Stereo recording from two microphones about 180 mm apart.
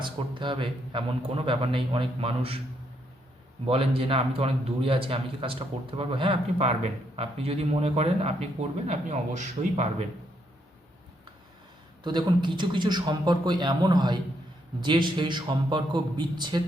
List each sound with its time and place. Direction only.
0.0 s a man's voice: 25° right (ahead or behind)
3.7 s speech: 30° right (ahead or behind)
12.0 s a man's voice: 25° right (ahead or behind)